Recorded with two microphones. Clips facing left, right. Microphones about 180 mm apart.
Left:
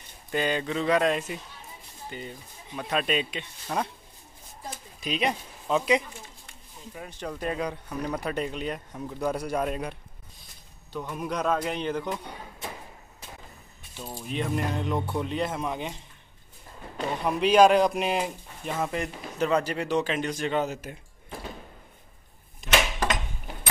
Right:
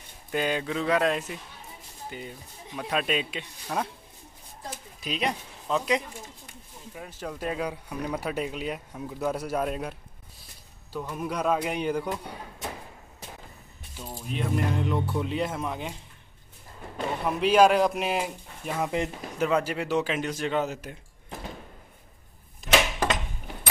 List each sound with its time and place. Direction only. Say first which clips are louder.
0.3 s speech: even; 5° right (ahead or behind)
14.1 s speech: even; centre (ahead or behind)
17.3 s speech: left 1 dB; 5° right (ahead or behind)
18.9 s speech: right 2 dB; 15° right (ahead or behind)
19.4 s speech: even; 5° right (ahead or behind)